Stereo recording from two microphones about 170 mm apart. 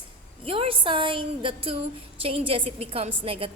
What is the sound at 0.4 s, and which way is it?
A woman's voice, 35° right (ahead or behind).